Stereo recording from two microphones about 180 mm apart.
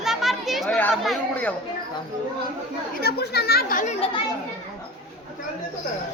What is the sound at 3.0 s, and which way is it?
Speech, 65° left (ahead or behind).